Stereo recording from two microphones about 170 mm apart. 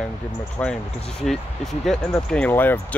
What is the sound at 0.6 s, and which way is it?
Speech, 10° left (ahead or behind).